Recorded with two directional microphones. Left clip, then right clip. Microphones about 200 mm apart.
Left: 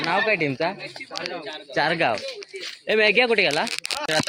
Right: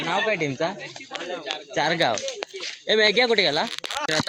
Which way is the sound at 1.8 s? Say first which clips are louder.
Left 1 dB; centre (ahead or behind).